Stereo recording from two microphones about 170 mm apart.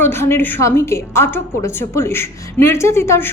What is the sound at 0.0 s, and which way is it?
A woman's voice, 15° left (ahead or behind).